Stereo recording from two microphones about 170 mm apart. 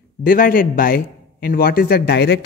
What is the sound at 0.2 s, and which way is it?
A man's voice, 55° left (ahead or behind).